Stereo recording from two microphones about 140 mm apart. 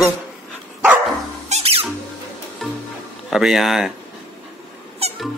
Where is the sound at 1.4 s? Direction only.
50° right (ahead or behind).